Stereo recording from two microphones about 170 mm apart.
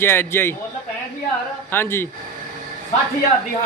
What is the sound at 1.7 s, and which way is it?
Speech, 15° left (ahead or behind).